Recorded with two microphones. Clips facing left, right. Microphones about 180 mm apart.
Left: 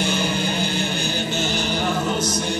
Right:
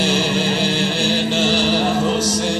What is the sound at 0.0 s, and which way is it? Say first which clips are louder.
Music: right 4 dB; 90° right.